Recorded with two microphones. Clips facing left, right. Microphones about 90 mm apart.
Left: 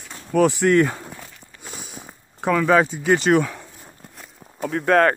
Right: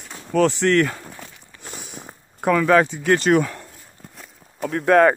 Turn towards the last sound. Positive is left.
turn(degrees=0)  # may be behind; listen again after turning